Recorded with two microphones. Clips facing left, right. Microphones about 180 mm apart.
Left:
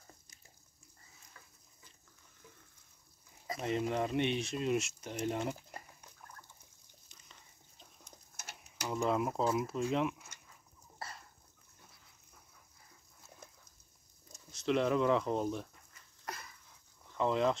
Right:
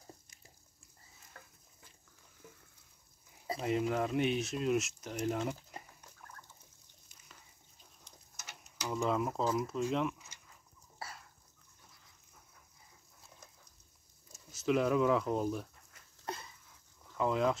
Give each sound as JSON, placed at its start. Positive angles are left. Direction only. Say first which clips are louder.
{"t": 1.3, "sound": "stir", "louder": "right 5 dB", "side_deg": -55}
{"t": 3.6, "sound": "speech", "louder": "right 1 dB", "side_deg": 0}
{"t": 8.4, "sound": "tick-tock", "louder": "even", "side_deg": 55}
{"t": 8.8, "sound": "speech", "louder": "even", "side_deg": 0}
{"t": 11.0, "sound": "a sound", "louder": "even", "side_deg": -5}
{"t": 14.3, "sound": "speech", "louder": "right 1 dB", "side_deg": -5}
{"t": 16.3, "sound": "a sound", "louder": "right 3 dB", "side_deg": -25}
{"t": 17.1, "sound": "speech", "louder": "even", "side_deg": 0}